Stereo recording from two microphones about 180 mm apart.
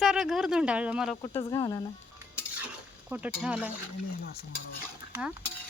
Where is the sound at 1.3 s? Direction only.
20° left (ahead or behind).